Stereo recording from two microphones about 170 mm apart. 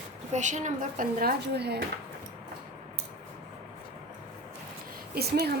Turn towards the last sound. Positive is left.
turn(degrees=-70)  # may be behind; listen again after turning